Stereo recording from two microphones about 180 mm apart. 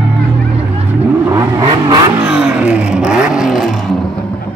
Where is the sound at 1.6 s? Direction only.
25° right (ahead or behind).